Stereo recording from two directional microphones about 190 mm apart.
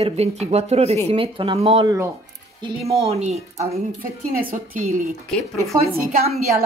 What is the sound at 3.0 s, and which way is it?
Speech, 35° right (ahead or behind).